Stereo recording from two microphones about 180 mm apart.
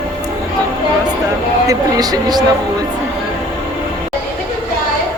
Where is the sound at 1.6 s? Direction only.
20° right (ahead or behind).